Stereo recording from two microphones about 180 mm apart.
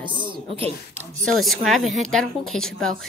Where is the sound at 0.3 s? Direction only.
30° right (ahead or behind).